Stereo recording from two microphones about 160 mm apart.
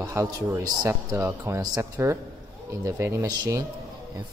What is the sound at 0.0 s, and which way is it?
A man's voice, 15° right (ahead or behind).